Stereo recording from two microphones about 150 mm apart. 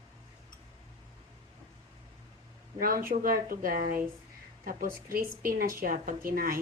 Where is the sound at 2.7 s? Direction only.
75° right (ahead or behind).